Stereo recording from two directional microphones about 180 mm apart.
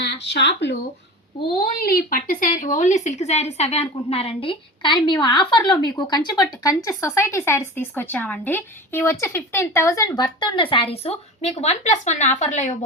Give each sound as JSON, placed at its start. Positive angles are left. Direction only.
{"t": 0.0, "sound": "speech", "side_deg": 75}
{"t": 1.5, "sound": "speech", "side_deg": 55}